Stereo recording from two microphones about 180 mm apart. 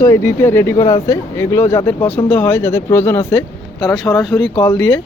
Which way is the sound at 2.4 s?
10° left (ahead or behind).